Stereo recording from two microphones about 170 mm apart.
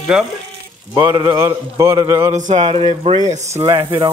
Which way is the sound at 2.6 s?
30° right (ahead or behind).